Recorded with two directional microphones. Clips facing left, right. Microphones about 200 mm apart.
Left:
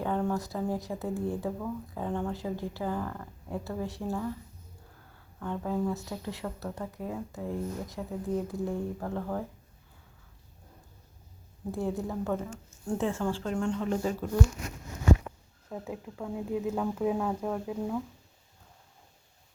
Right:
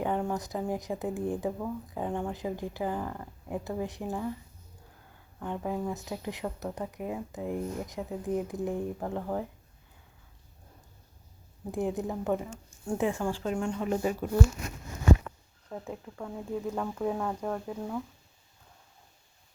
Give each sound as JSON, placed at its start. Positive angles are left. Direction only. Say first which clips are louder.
{"t": 0.0, "sound": "speech", "louder": "even", "side_deg": -15}
{"t": 5.4, "sound": "speech", "louder": "left 2 dB", "side_deg": -15}
{"t": 11.7, "sound": "speech", "louder": "right 1 dB", "side_deg": -20}
{"t": 15.7, "sound": "speech", "louder": "left 1 dB", "side_deg": 5}